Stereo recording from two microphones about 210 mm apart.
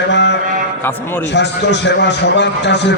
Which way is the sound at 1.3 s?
55° left (ahead or behind).